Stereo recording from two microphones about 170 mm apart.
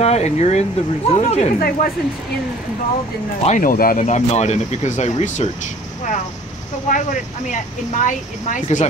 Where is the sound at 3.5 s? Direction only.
50° left (ahead or behind).